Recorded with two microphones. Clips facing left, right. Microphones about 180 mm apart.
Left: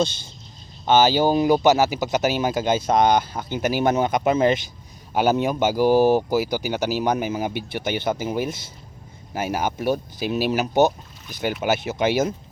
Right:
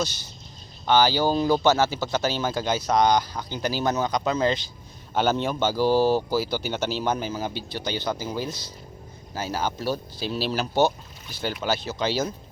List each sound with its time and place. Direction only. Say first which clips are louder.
0.9 s speech: left 3 dB; 20° left (ahead or behind)